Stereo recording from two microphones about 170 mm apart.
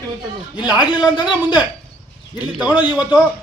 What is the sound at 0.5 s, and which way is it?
Speech, 25° left (ahead or behind).